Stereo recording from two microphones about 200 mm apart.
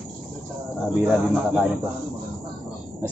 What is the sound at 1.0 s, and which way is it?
Speech, centre (ahead or behind).